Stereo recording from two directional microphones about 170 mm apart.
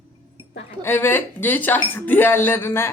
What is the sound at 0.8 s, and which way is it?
Speech, 15° left (ahead or behind).